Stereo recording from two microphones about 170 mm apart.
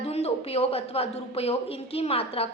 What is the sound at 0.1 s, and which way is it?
A woman's voice, 35° left (ahead or behind).